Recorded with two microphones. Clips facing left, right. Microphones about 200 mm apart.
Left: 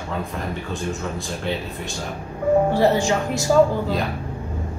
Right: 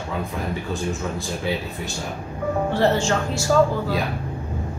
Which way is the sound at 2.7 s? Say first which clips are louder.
Left 2 dB; 15° left (ahead or behind).